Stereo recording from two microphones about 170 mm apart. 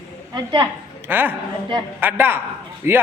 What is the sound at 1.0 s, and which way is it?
Speech, 10° right (ahead or behind).